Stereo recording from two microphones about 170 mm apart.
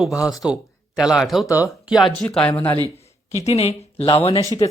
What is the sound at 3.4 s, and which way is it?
Speech, 40° left (ahead or behind).